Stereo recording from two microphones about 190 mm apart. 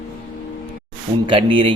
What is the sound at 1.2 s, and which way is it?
Speech, 30° right (ahead or behind).